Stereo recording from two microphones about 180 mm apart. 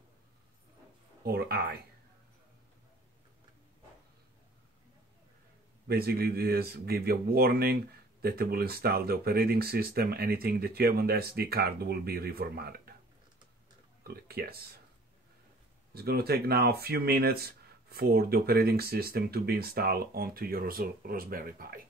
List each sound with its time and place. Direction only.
1.2 s speech: 60° right (ahead or behind)
5.9 s speech: 60° right (ahead or behind)
14.0 s speech: 60° right (ahead or behind)
15.9 s speech: 60° right (ahead or behind)